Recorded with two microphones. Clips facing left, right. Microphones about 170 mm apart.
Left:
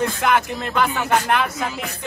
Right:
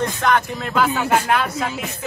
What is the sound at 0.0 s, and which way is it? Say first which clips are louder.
Speech: even; 5° left (ahead or behind).